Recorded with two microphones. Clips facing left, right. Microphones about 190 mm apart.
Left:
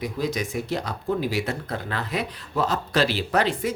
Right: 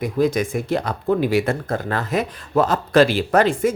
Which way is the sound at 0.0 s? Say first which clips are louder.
Right 8 dB; 50° right (ahead or behind).